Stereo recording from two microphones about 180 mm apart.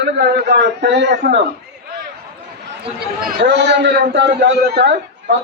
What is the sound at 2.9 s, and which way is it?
A man's voice, 70° right (ahead or behind).